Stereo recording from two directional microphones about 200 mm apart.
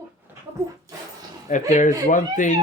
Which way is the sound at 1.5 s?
40° left (ahead or behind).